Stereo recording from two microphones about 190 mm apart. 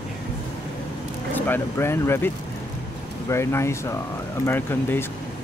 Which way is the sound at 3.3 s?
15° left (ahead or behind).